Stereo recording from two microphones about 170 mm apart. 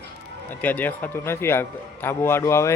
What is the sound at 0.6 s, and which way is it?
A man's voice, 10° left (ahead or behind).